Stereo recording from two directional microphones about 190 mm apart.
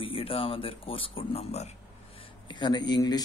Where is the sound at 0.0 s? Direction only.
30° left (ahead or behind).